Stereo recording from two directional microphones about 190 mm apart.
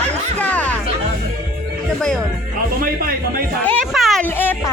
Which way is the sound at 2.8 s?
50° right (ahead or behind).